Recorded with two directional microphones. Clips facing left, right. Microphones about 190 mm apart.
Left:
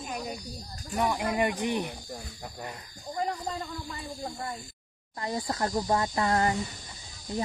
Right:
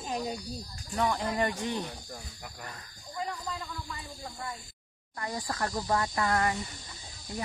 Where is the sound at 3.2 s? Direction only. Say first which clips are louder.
Left 4 dB; 40° left (ahead or behind).